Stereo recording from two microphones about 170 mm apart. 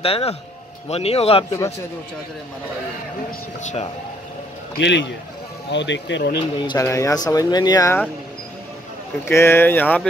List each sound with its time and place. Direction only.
0.0 s speech: 35° left (ahead or behind)
3.3 s speech: 45° left (ahead or behind)
4.7 s speech: 90° left
6.6 s speech: 20° left (ahead or behind)
9.2 s speech: 15° left (ahead or behind)